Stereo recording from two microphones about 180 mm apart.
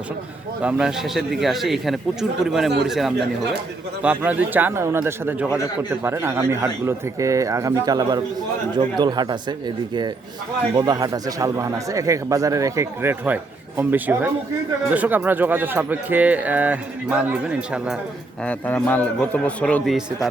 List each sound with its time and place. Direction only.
0.6 s a man's voice: 5° right (ahead or behind)
18.4 s a man's voice: 10° left (ahead or behind)